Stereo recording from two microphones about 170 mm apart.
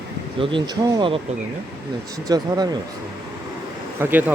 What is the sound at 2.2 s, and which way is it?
Speech, 25° right (ahead or behind).